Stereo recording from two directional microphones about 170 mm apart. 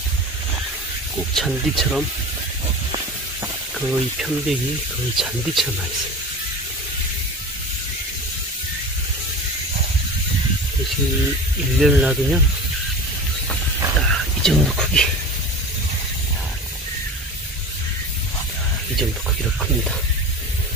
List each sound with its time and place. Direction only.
1.3 s speech: centre (ahead or behind)
3.8 s speech: centre (ahead or behind)
11.8 s speech: 5° right (ahead or behind)
13.9 s whispering: centre (ahead or behind)